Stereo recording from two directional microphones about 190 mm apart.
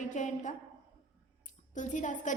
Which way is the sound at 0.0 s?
40° left (ahead or behind).